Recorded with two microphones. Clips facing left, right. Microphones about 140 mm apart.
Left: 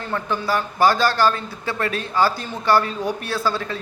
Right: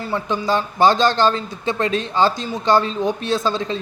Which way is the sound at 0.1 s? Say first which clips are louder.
Right 2 dB; 20° right (ahead or behind).